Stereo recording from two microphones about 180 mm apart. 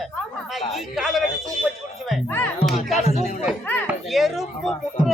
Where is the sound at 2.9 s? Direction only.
40° left (ahead or behind).